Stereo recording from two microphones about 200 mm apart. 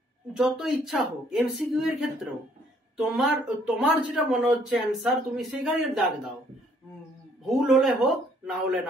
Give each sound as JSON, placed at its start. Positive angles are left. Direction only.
{"t": 0.3, "sound": "speech", "side_deg": 0}
{"t": 7.4, "sound": "a man's voice", "side_deg": 0}